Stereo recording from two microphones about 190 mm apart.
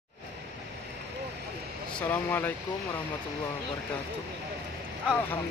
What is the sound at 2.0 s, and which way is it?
Speech, 10° left (ahead or behind).